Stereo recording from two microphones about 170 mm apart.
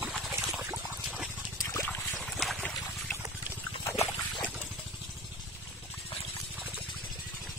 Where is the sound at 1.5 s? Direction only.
20° left (ahead or behind).